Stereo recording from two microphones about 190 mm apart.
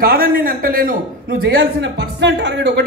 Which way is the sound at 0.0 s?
50° right (ahead or behind).